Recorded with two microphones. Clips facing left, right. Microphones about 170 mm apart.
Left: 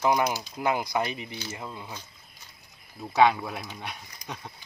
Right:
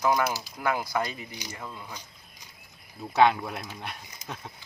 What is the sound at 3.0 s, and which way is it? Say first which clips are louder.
Speech: even; centre (ahead or behind).